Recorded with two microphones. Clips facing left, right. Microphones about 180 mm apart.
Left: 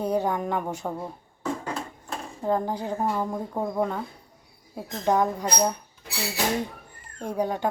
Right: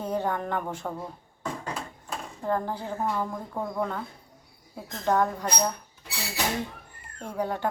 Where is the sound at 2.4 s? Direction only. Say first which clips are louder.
Left 3 dB; 15° left (ahead or behind).